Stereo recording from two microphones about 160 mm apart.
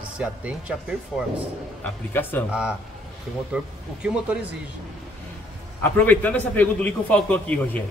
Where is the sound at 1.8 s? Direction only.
10° left (ahead or behind).